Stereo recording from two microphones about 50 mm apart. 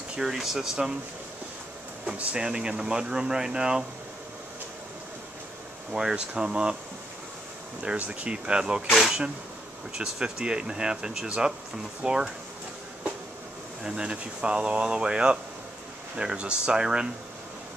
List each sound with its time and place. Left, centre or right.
0.2 s speech: centre
2.1 s speech: centre
5.9 s speech: centre
8.1 s speech: right
8.9 s a sound: centre
9.9 s speech: centre
13.8 s speech: centre